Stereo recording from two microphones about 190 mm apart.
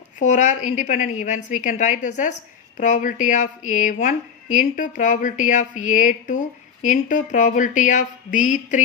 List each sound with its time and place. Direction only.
0.2 s speech: 40° left (ahead or behind)